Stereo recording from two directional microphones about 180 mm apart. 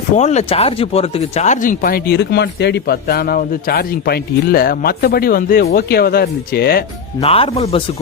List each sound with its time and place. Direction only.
0.2 s speech: 40° left (ahead or behind); by 6.8 s 60° left (ahead or behind)
7.2 s speech: 30° left (ahead or behind)